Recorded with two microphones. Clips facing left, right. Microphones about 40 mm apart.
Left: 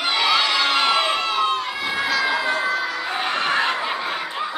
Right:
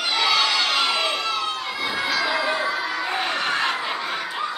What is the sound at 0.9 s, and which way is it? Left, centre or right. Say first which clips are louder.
Crowd: left 3 dB; left.